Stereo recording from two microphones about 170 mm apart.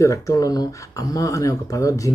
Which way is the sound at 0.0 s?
20° left (ahead or behind).